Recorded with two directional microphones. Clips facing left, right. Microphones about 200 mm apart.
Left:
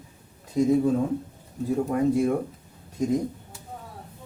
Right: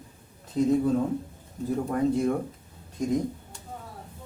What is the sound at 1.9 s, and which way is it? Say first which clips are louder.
Speech: left 2 dB; 10° left (ahead or behind).